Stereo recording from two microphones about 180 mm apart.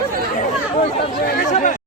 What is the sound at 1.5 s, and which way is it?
Chatter, 45° left (ahead or behind).